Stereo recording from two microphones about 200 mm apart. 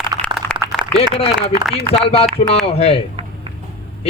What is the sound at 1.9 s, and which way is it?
A man's voice, 30° left (ahead or behind).